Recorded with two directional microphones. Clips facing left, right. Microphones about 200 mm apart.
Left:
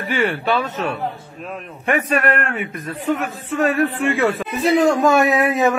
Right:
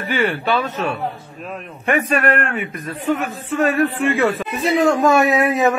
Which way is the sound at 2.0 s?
35° right (ahead or behind).